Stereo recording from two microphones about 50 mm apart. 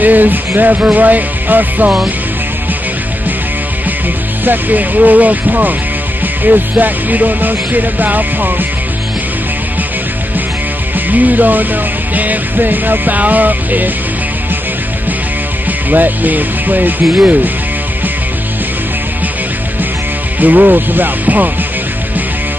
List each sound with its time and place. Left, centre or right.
0.0 s music: right
4.5 s music: right
11.1 s music: right
15.9 s music: right
20.3 s music: right